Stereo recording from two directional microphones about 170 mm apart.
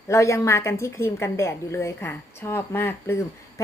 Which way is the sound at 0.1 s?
15° left (ahead or behind).